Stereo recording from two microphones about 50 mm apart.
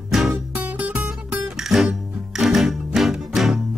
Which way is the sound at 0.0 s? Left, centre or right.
Centre.